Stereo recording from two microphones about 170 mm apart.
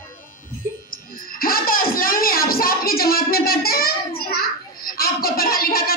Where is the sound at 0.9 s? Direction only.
55° left (ahead or behind).